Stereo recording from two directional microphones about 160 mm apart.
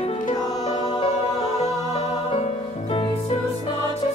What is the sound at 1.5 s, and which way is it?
Music, 45° left (ahead or behind).